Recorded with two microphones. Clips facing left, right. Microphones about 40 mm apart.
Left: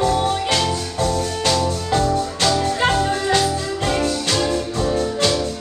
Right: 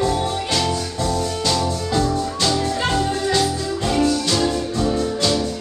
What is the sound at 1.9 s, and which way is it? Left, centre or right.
Music, left.